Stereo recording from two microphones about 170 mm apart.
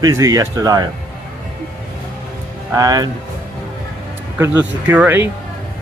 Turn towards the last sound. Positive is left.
turn(degrees=-10)  # may be behind; listen again after turning